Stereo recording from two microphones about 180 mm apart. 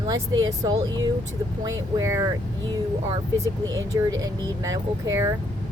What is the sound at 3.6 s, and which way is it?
Speech, 20° right (ahead or behind).